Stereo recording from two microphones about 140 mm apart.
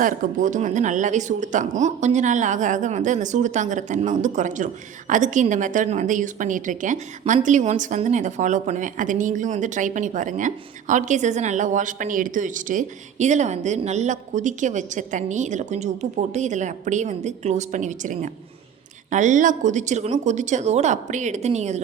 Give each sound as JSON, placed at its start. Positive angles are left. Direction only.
{"t": 0.0, "sound": "a woman's voice", "side_deg": -70}